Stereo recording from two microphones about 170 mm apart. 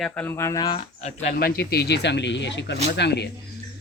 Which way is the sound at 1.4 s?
70° left (ahead or behind).